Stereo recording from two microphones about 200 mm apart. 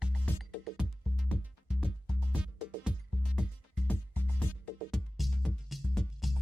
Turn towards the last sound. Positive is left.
turn(degrees=0)  # may be behind; listen again after turning